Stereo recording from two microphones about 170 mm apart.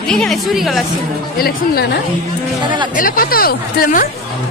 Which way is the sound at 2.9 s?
55° left (ahead or behind).